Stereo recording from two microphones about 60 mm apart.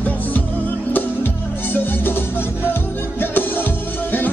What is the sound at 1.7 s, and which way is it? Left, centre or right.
Music, left.